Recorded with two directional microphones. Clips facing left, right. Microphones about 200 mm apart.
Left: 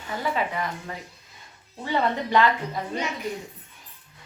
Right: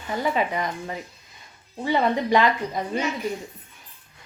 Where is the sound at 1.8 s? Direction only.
15° right (ahead or behind).